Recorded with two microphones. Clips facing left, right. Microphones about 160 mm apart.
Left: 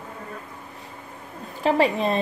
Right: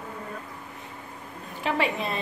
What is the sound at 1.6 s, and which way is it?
Speech, 35° left (ahead or behind).